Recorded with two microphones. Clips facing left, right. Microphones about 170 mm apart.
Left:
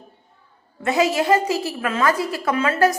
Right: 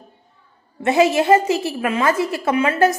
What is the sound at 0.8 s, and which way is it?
A woman's voice, 25° right (ahead or behind).